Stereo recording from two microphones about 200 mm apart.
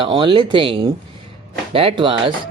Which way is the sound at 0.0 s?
25° right (ahead or behind).